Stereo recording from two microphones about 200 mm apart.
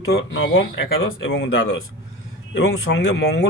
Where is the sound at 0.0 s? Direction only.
65° left (ahead or behind).